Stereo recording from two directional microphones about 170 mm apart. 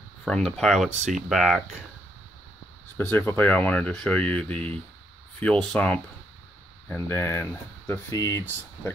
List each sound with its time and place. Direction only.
0.2 s speech: 5° left (ahead or behind)
3.0 s speech: 10° left (ahead or behind)
7.0 s speech: 15° left (ahead or behind)